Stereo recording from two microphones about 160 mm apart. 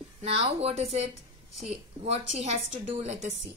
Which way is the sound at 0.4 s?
40° right (ahead or behind).